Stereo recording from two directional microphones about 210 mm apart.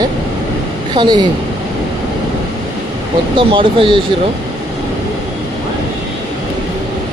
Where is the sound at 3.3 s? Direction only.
25° right (ahead or behind).